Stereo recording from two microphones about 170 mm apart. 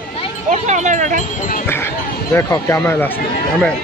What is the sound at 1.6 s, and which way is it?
Speech, 15° left (ahead or behind).